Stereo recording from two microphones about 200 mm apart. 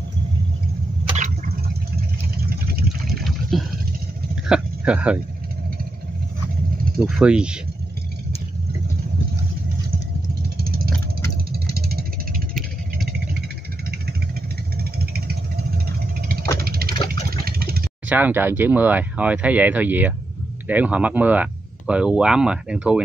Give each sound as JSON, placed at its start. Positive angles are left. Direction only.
{"t": 1.0, "sound": "a sound", "side_deg": -35}
{"t": 3.1, "sound": "a sound", "side_deg": 0}
{"t": 7.1, "sound": "speech", "side_deg": -5}
{"t": 10.6, "sound": "vehicle", "side_deg": -50}
{"t": 16.5, "sound": "engine", "side_deg": -50}
{"t": 18.0, "sound": "speech", "side_deg": -10}